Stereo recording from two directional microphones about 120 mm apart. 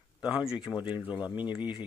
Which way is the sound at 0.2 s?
5° right (ahead or behind).